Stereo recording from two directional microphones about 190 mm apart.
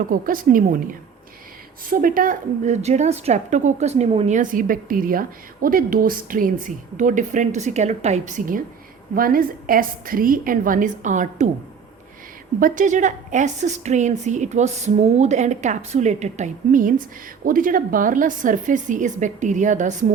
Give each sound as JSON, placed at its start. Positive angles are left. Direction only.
{"t": 0.1, "sound": "a woman's voice", "side_deg": -45}
{"t": 1.9, "sound": "a woman's voice", "side_deg": -50}
{"t": 12.5, "sound": "a woman's voice", "side_deg": -45}